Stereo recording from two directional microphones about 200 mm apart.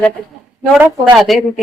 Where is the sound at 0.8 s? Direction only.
15° right (ahead or behind).